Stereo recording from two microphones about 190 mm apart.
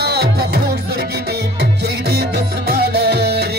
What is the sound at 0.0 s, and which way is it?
Music, 55° right (ahead or behind).